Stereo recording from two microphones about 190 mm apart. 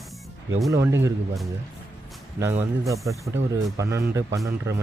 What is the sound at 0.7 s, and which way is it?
Speech, 15° right (ahead or behind).